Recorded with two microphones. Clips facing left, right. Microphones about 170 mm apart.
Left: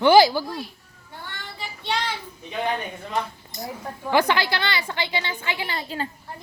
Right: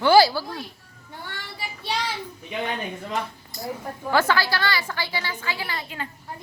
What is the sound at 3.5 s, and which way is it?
A woman's voice, 20° left (ahead or behind).